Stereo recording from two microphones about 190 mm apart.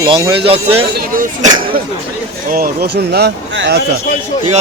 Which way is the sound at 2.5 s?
50° right (ahead or behind).